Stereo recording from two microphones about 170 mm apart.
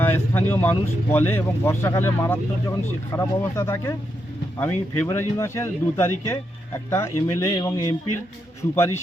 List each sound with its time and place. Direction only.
0.0 s speech: 10° left (ahead or behind)